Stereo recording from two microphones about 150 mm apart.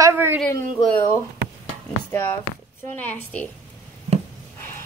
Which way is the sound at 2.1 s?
15° left (ahead or behind).